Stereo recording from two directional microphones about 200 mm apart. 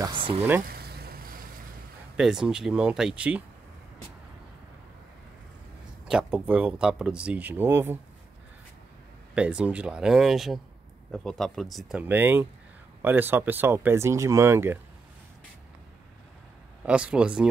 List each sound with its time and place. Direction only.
0.0 s a sound: 25° right (ahead or behind)
0.6 s vehicle: 50° right (ahead or behind)
2.1 s speech: 5° right (ahead or behind)
6.0 s speech: 5° right (ahead or behind)
9.3 s speech: 5° right (ahead or behind)
16.8 s speech: 5° right (ahead or behind)